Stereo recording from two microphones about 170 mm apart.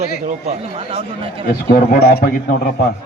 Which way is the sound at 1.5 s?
50° left (ahead or behind).